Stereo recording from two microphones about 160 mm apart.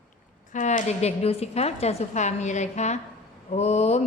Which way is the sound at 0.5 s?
50° left (ahead or behind).